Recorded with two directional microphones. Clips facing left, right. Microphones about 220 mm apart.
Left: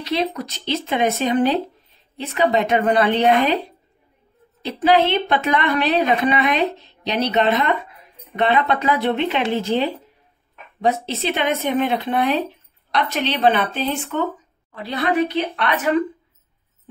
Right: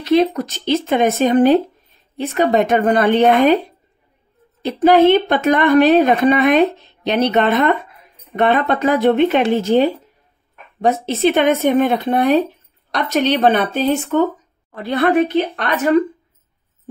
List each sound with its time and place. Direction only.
0.0 s a woman's voice: 50° right (ahead or behind)
4.6 s a woman's voice: 45° right (ahead or behind)